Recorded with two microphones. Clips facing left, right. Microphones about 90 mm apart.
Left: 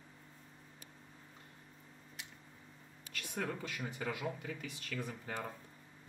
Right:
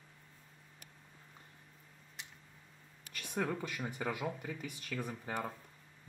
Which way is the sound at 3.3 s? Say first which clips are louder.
Right 4 dB; 15° right (ahead or behind).